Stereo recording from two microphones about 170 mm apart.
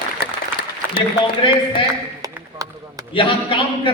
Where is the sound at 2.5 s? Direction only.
20° right (ahead or behind).